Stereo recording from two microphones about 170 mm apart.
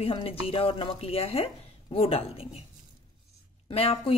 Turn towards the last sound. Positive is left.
turn(degrees=35)  # may be behind; listen again after turning